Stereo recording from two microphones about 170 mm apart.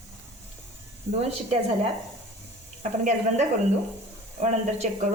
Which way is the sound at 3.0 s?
45° right (ahead or behind).